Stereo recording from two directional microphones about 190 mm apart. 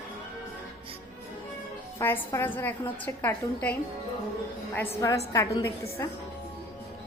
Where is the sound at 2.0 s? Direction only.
15° left (ahead or behind).